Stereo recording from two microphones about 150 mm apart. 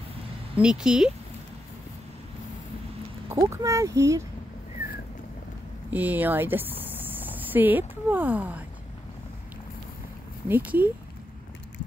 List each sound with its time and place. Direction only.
0.6 s speech: 5° right (ahead or behind)
3.3 s speech: 20° right (ahead or behind)
5.9 s speech: 10° right (ahead or behind)
10.5 s speech: 10° right (ahead or behind)